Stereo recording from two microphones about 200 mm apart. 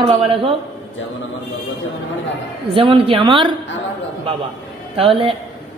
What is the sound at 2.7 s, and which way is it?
Speech, 25° right (ahead or behind).